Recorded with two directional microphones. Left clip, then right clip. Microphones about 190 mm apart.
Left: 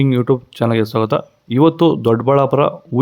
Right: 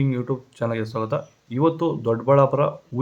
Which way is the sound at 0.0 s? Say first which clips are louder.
Left 10 dB; 55° left (ahead or behind).